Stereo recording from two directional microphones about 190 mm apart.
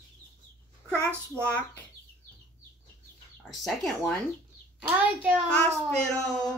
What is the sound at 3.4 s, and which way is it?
Speech, centre (ahead or behind).